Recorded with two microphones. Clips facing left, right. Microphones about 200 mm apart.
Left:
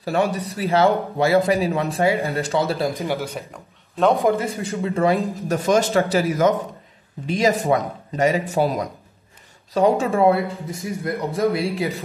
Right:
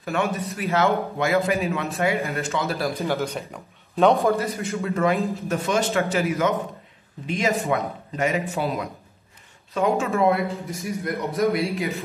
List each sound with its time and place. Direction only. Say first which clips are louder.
0.0 s a man's voice: left 4 dB; 35° left (ahead or behind)
3.0 s speech: even; 10° left (ahead or behind)
3.5 s speech: right 3 dB; centre (ahead or behind)
4.1 s speech: left 1 dB; 15° left (ahead or behind)
4.5 s a man's voice: left 2 dB; 30° left (ahead or behind)